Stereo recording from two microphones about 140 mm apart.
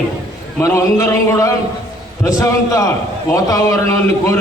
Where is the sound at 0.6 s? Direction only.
20° left (ahead or behind).